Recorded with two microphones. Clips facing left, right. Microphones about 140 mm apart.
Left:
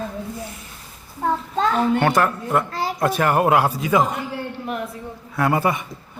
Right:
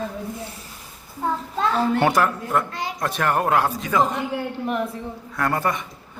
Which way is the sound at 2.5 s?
5° left (ahead or behind).